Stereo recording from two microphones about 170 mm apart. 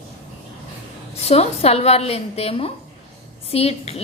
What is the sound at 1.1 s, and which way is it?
A woman's voice, 40° left (ahead or behind).